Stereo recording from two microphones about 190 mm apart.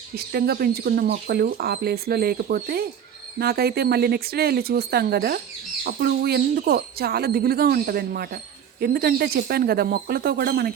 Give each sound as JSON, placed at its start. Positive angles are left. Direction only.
{"t": 0.2, "sound": "speech", "side_deg": -55}